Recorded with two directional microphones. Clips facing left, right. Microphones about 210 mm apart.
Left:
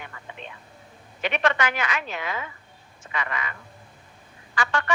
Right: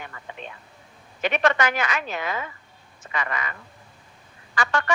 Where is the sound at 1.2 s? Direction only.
40° right (ahead or behind).